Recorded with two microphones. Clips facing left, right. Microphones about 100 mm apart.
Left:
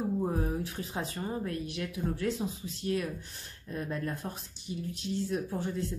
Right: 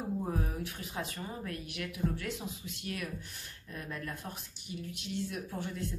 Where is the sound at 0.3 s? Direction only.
30° left (ahead or behind).